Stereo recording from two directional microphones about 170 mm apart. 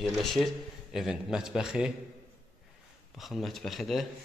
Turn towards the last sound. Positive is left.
turn(degrees=0)  # may be behind; listen again after turning